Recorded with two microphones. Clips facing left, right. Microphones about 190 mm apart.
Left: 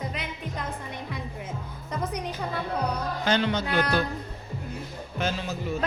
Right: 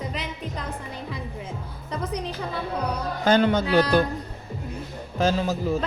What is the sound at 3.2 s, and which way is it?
Speech, 45° right (ahead or behind).